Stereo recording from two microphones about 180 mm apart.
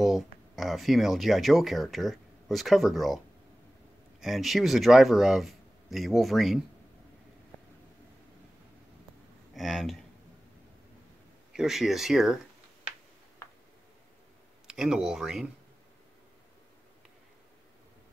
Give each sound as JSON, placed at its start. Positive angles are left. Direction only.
{"t": 0.0, "sound": "speech", "side_deg": 0}
{"t": 4.2, "sound": "speech", "side_deg": 0}
{"t": 9.5, "sound": "speech", "side_deg": 0}
{"t": 11.5, "sound": "speech", "side_deg": 0}
{"t": 13.4, "sound": "a sound", "side_deg": 15}
{"t": 14.7, "sound": "speech", "side_deg": -5}